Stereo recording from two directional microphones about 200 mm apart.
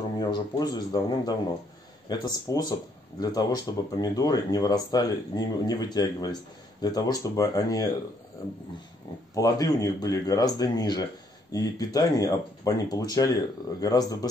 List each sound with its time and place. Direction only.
0.2 s speech: 20° left (ahead or behind)
9.3 s speech: 20° left (ahead or behind)